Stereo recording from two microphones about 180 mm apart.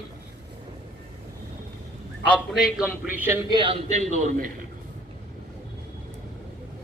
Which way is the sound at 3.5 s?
30° right (ahead or behind).